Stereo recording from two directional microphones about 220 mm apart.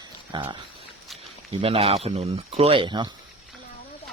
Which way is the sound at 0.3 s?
20° right (ahead or behind).